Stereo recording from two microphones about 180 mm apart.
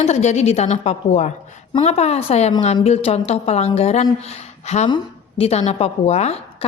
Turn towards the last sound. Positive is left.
turn(degrees=40)  # may be behind; listen again after turning